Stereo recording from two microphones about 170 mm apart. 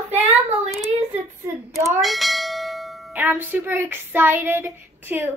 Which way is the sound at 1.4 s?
15° right (ahead or behind).